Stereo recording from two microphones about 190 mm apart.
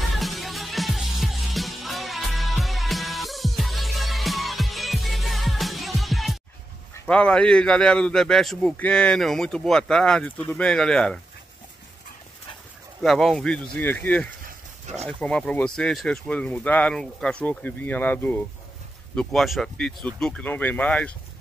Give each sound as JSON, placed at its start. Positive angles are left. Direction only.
{"t": 0.1, "sound": "music", "side_deg": 0}
{"t": 7.1, "sound": "a man's voice", "side_deg": 5}
{"t": 13.0, "sound": "a man's voice", "side_deg": 0}
{"t": 14.4, "sound": "dog", "side_deg": -40}
{"t": 15.0, "sound": "a man's voice", "side_deg": 5}